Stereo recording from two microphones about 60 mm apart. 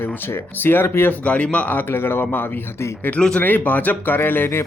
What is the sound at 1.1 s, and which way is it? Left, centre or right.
A man's voice, left.